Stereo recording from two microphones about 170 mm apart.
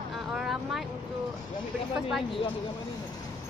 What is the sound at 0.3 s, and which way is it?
Vehicle, 5° right (ahead or behind).